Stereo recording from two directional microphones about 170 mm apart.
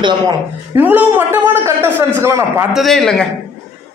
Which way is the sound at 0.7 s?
10° right (ahead or behind).